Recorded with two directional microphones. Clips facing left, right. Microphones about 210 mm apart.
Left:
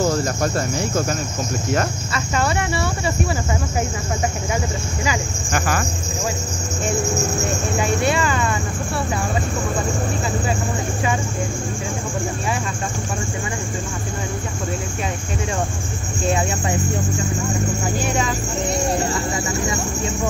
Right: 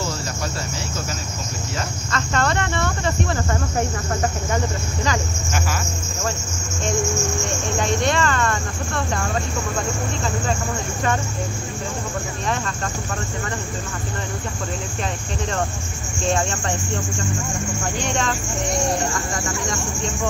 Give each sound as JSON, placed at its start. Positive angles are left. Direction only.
{"t": 0.0, "sound": "cricket", "side_deg": 50}
{"t": 2.1, "sound": "speech", "side_deg": 10}
{"t": 5.5, "sound": "cricket", "side_deg": 55}
{"t": 6.9, "sound": "speech", "side_deg": 35}
{"t": 7.8, "sound": "speech", "side_deg": 5}
{"t": 17.9, "sound": "speech", "side_deg": 5}
{"t": 19.3, "sound": "speech", "side_deg": 5}